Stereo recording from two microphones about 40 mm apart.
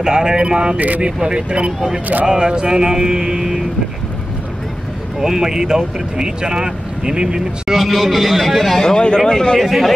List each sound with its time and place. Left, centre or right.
0.0 s speech: centre
0.7 s speech: right
1.0 s speech: right
5.2 s speech: centre
7.7 s speech: centre
8.8 s speech: centre
9.6 s speech: centre